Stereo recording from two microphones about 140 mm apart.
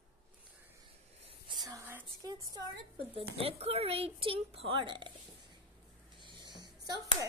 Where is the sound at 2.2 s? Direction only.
25° right (ahead or behind).